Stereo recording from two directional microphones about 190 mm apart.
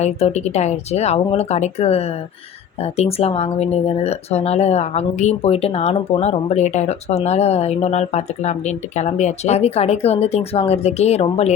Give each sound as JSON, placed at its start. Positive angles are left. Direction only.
{"t": 0.0, "sound": "speech", "side_deg": 35}